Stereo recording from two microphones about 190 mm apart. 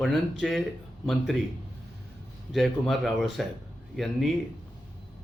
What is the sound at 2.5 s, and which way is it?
Speech, centre (ahead or behind).